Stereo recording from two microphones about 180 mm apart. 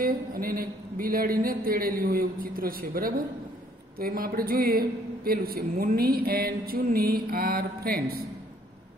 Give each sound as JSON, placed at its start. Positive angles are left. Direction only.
{"t": 0.0, "sound": "speech", "side_deg": -55}